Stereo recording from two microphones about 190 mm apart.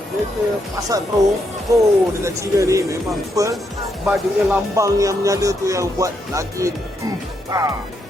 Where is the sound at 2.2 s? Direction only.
15° right (ahead or behind).